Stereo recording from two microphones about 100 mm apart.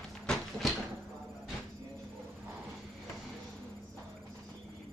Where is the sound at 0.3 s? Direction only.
Centre (ahead or behind).